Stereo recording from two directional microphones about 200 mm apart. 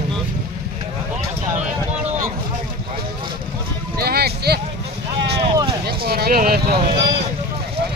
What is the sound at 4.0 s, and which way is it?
Speech, 50° right (ahead or behind).